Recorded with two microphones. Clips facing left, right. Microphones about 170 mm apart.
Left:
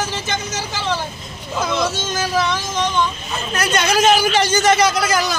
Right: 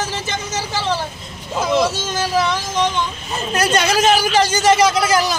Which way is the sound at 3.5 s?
35° right (ahead or behind).